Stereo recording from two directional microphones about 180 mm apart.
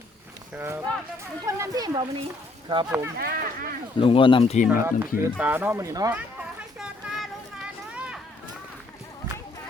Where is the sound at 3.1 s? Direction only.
55° right (ahead or behind).